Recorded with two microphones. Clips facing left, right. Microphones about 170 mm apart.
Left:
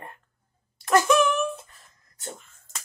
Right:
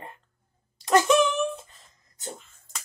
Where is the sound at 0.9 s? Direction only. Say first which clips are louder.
Even; 25° right (ahead or behind).